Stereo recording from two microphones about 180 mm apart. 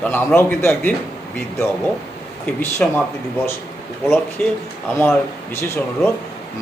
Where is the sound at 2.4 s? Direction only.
10° left (ahead or behind).